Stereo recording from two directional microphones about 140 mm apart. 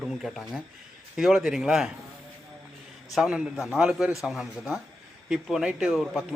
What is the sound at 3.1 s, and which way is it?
A man's voice, 5° right (ahead or behind).